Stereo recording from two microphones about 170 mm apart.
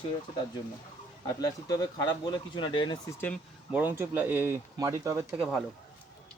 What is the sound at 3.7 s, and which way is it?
Speech, 10° right (ahead or behind).